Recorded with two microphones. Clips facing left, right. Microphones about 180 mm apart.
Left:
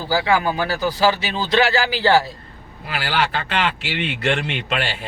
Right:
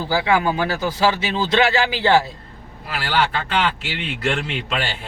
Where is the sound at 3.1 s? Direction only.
Centre (ahead or behind).